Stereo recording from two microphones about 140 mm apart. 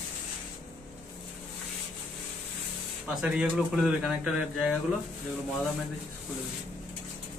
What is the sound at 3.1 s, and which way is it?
Speech, 5° right (ahead or behind).